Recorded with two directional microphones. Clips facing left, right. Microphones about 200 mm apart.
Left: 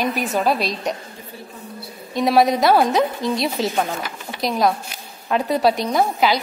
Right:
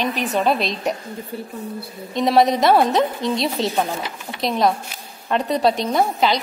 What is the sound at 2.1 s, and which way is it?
A woman's voice, centre (ahead or behind).